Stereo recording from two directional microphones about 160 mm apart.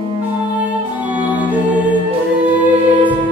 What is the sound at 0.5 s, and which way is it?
Music, 10° right (ahead or behind).